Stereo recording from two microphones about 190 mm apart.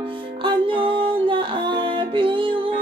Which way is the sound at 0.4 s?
25° right (ahead or behind).